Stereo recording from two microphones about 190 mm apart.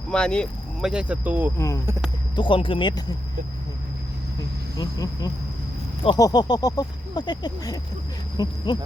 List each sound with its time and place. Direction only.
0.1 s speech: 5° left (ahead or behind)
1.5 s speech: 15° left (ahead or behind)
2.3 s speech: 25° left (ahead or behind)
4.8 s speech: 20° left (ahead or behind)